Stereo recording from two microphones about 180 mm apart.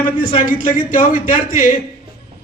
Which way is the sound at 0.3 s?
50° left (ahead or behind).